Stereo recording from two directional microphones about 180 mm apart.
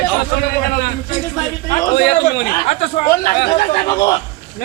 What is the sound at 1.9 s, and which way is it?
Speech, 70° left (ahead or behind).